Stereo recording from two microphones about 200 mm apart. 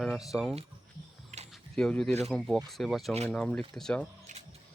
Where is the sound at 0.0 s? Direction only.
Centre (ahead or behind).